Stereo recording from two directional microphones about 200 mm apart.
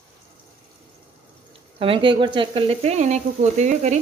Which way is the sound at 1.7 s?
25° right (ahead or behind).